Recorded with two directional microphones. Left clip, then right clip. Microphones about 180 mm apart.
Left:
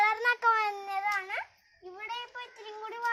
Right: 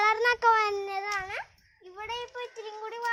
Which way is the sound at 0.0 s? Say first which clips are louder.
Right 2 dB; 50° right (ahead or behind).